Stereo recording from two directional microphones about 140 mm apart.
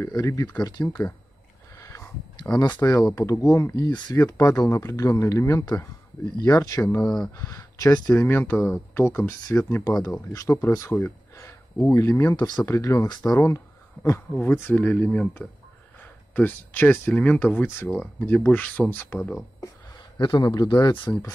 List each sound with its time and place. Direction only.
0.2 s speech: 20° left (ahead or behind)
1.8 s a sound: 20° left (ahead or behind)
2.3 s speech: 30° left (ahead or behind)
14.3 s speech: 10° left (ahead or behind)
20.2 s speech: 30° left (ahead or behind)